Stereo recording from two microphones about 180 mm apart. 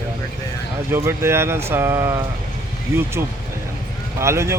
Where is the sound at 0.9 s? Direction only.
15° right (ahead or behind).